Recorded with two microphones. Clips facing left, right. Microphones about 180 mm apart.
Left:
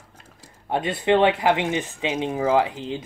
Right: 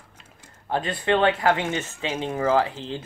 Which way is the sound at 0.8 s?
25° left (ahead or behind).